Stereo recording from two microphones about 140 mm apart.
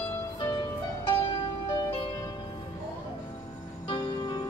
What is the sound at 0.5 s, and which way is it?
Music, 35° left (ahead or behind).